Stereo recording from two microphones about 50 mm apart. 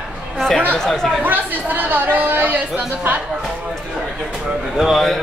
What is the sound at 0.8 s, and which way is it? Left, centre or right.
Speech, centre.